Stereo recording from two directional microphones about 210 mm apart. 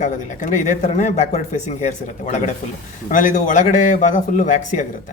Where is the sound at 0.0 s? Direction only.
35° left (ahead or behind).